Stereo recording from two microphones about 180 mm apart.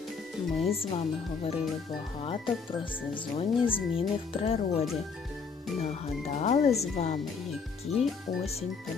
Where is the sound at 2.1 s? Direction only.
30° left (ahead or behind).